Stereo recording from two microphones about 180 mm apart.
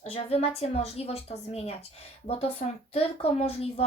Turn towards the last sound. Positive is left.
turn(degrees=35)  # may be behind; listen again after turning